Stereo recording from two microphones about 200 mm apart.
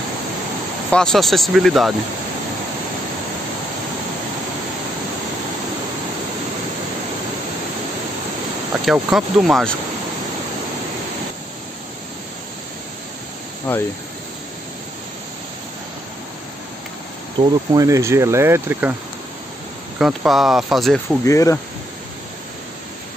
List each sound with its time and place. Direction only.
0.9 s speech: centre (ahead or behind)
8.8 s speech: centre (ahead or behind)
13.7 s speech: 5° left (ahead or behind)
17.4 s speech: 15° right (ahead or behind)
20.0 s speech: centre (ahead or behind)
21.2 s speech: 15° left (ahead or behind)